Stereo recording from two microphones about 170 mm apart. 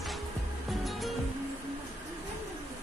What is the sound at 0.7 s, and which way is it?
Music, centre (ahead or behind).